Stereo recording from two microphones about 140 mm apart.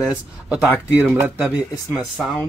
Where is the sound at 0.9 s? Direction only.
15° right (ahead or behind).